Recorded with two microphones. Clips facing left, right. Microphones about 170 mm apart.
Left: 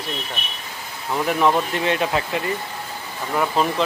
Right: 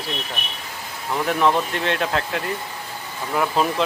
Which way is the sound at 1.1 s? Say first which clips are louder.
Left 1 dB; 5° left (ahead or behind).